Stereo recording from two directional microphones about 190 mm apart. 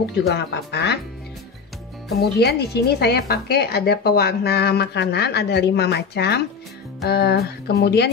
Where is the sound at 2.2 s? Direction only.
60° left (ahead or behind).